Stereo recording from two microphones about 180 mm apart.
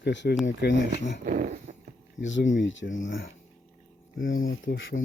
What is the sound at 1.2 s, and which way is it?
Dog, 50° right (ahead or behind).